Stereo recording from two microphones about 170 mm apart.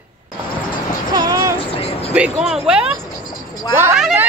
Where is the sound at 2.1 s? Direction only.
5° right (ahead or behind).